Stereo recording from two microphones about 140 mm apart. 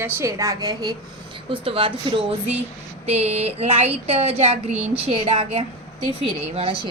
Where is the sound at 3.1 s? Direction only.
50° right (ahead or behind).